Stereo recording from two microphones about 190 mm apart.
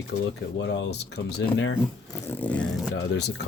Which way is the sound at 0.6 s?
65° left (ahead or behind).